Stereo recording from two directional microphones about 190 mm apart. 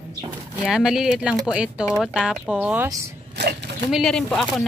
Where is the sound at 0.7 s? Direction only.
5° right (ahead or behind).